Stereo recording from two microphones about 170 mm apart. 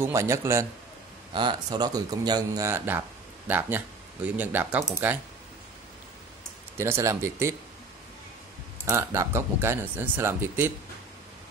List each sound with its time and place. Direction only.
0.0 s speech: 15° right (ahead or behind)
1.3 s speech: 25° right (ahead or behind); by 5.1 s 10° right (ahead or behind)
6.8 s speech: 15° right (ahead or behind)
8.8 s speech: 15° right (ahead or behind)